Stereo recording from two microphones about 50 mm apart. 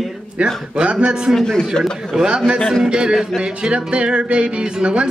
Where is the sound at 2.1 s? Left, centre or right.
Centre.